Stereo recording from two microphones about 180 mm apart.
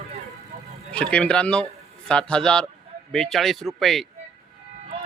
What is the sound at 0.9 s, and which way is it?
A man's voice, 5° left (ahead or behind).